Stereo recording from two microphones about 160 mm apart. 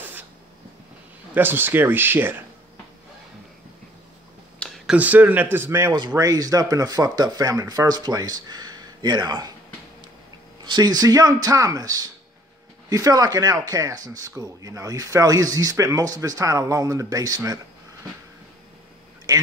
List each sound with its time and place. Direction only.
1.3 s speech: 15° right (ahead or behind)
4.6 s speech: centre (ahead or behind); by 5.9 s 15° right (ahead or behind)
5.9 s speech: 25° right (ahead or behind)
10.6 s speech: 25° right (ahead or behind)